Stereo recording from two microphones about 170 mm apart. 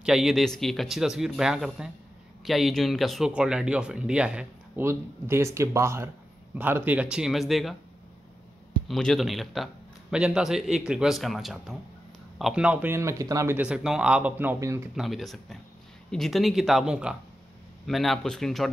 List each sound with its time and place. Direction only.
0.0 s speech: centre (ahead or behind)
8.8 s speech: centre (ahead or behind); by 13.6 s 20° right (ahead or behind)
13.6 s speech: 5° right (ahead or behind)
15.0 s speech: centre (ahead or behind)